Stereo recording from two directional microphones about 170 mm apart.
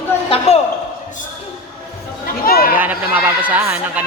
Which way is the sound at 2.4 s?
60° left (ahead or behind).